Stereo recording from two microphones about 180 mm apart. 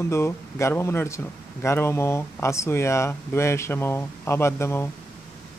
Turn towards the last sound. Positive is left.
turn(degrees=15)  # may be behind; listen again after turning